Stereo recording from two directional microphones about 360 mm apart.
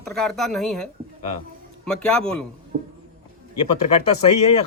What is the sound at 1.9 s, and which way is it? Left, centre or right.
Speech, centre.